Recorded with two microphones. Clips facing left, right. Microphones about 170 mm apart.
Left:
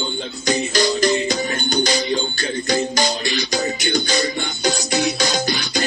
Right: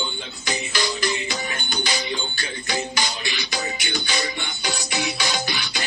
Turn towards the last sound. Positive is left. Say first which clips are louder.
# left 7 dB
turn(degrees=45)  # may be behind; listen again after turning